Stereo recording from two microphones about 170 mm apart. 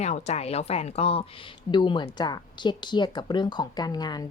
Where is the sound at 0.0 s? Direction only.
40° left (ahead or behind).